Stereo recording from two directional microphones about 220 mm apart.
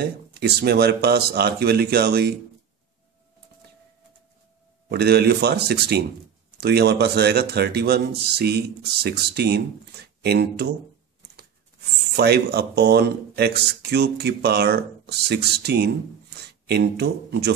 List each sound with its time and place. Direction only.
0.0 s speech: 45° right (ahead or behind)
4.8 s speech: 45° right (ahead or behind)
12.2 s speech: 45° right (ahead or behind)